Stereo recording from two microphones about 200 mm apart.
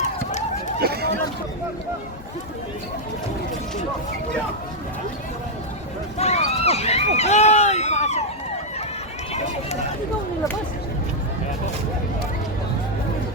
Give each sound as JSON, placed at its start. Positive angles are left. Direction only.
{"t": 0.0, "sound": "a sound", "side_deg": 35}
{"t": 0.8, "sound": "speech", "side_deg": -50}
{"t": 6.1, "sound": "speech", "side_deg": 30}